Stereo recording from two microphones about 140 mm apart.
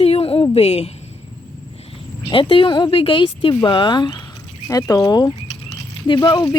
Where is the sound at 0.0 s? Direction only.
45° left (ahead or behind).